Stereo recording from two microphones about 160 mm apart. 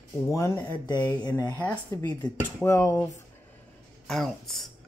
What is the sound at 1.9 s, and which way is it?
Speech, 20° left (ahead or behind).